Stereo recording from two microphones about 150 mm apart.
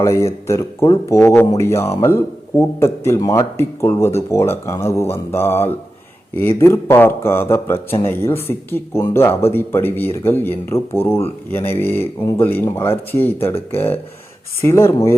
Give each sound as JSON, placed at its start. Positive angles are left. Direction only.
{"t": 0.0, "sound": "a man's voice", "side_deg": 20}